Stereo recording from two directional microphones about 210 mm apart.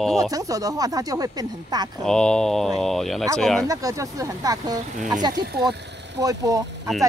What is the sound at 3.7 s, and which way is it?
Speech, 15° right (ahead or behind).